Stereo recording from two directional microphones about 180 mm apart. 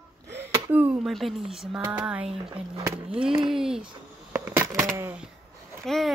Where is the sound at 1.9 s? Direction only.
5° right (ahead or behind).